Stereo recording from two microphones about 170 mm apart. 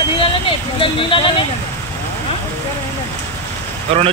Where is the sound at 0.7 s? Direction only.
30° left (ahead or behind).